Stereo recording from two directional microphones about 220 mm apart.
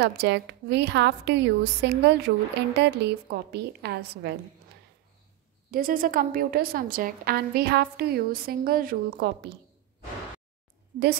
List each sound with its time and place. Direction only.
0.0 s a woman's voice: 50° right (ahead or behind)
5.7 s a woman's voice: 40° right (ahead or behind)